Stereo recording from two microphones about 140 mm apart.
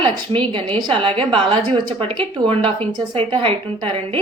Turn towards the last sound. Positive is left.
turn(degrees=-40)  # may be behind; listen again after turning